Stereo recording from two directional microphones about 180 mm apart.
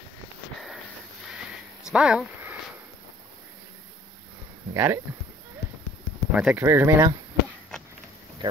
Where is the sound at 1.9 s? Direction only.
5° right (ahead or behind).